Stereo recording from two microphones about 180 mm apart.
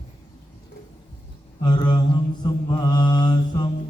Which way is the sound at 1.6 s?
25° left (ahead or behind).